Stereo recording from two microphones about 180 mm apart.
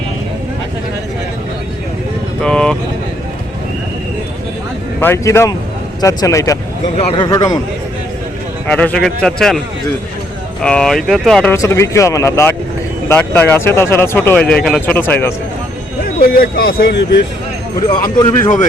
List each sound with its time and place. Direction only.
2.4 s a sound: 5° left (ahead or behind)
4.9 s a man's voice: 15° left (ahead or behind)
8.6 s a man's voice: 5° left (ahead or behind)
10.6 s a man's voice: 5° left (ahead or behind)
11.5 s speech: 15° left (ahead or behind)
16.3 s speech: 55° left (ahead or behind)
18.2 s a man's voice: 25° left (ahead or behind)